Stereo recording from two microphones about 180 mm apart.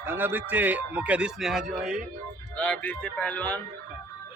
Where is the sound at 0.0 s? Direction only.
10° right (ahead or behind).